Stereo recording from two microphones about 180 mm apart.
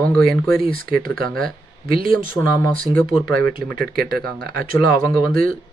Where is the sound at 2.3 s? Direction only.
15° left (ahead or behind).